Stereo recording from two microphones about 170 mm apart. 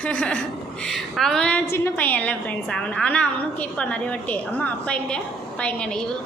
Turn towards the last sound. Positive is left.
turn(degrees=5)  # may be behind; listen again after turning